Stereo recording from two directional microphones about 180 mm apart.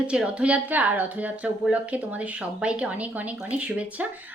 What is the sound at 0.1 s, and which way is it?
A woman's voice, 5° right (ahead or behind).